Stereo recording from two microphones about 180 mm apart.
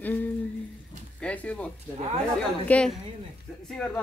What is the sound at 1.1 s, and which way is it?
Speech, 5° left (ahead or behind).